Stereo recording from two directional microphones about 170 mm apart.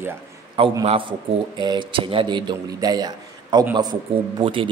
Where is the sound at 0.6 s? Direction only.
30° right (ahead or behind).